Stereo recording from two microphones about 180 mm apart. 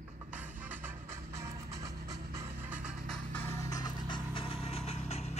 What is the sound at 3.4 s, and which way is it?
Music, 15° left (ahead or behind).